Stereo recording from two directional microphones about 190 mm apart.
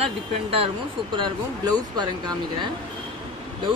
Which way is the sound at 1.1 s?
25° right (ahead or behind).